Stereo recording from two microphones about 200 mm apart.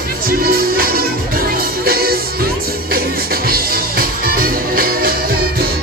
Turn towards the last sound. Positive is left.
turn(degrees=-45)  # may be behind; listen again after turning